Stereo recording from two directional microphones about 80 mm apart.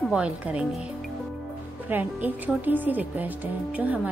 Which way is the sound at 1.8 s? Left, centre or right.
Right.